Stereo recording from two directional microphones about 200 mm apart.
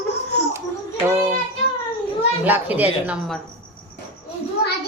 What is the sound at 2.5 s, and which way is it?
Speech, 10° right (ahead or behind).